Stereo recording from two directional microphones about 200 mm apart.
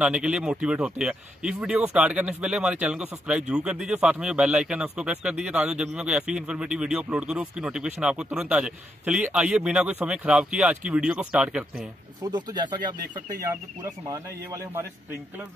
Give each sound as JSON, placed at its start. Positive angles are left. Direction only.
{"t": 0.0, "sound": "speech", "side_deg": -5}
{"t": 12.2, "sound": "a man's voice", "side_deg": -20}